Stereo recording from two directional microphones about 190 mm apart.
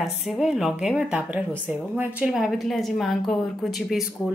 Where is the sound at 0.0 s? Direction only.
Centre (ahead or behind).